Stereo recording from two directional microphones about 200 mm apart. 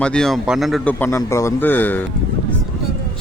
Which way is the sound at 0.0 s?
5° left (ahead or behind).